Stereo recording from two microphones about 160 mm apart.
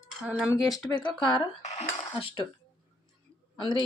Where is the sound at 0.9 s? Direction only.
30° left (ahead or behind).